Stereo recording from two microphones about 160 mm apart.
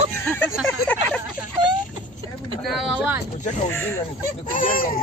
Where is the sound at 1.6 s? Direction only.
30° right (ahead or behind).